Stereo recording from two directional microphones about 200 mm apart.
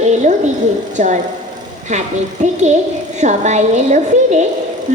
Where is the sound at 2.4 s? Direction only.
35° right (ahead or behind).